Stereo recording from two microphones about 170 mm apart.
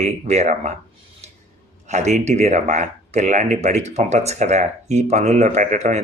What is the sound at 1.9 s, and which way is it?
Speech, 45° right (ahead or behind).